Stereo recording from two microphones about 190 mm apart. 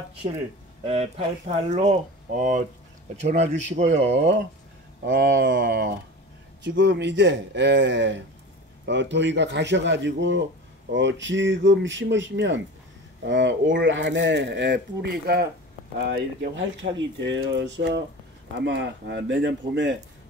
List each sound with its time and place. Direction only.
0.8 s speech: 30° right (ahead or behind)
4.1 s speech: 70° right (ahead or behind); by 15.4 s 55° right (ahead or behind)
16.1 s speech: 65° right (ahead or behind)